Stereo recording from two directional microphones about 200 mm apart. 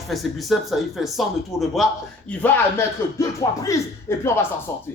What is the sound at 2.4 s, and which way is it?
Speech, 15° left (ahead or behind).